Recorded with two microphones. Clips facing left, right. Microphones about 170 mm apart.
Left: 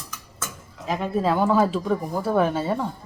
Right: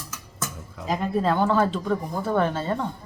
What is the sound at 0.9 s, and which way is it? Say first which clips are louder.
A woman's voice: even; 5° left (ahead or behind).